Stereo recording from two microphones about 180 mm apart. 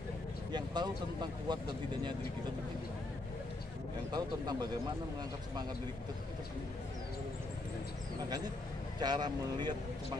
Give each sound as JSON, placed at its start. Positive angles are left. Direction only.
{"t": 0.5, "sound": "a sound", "side_deg": -25}
{"t": 1.5, "sound": "speech", "side_deg": -25}
{"t": 4.1, "sound": "speech", "side_deg": -20}
{"t": 9.0, "sound": "speech", "side_deg": -25}